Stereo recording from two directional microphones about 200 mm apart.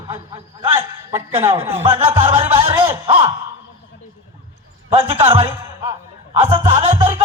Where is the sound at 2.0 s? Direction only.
30° right (ahead or behind).